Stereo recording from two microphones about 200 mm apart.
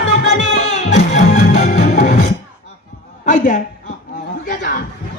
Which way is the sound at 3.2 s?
40° left (ahead or behind).